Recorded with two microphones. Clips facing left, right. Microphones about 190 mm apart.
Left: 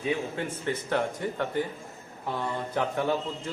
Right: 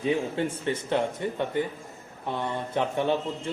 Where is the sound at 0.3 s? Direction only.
25° right (ahead or behind).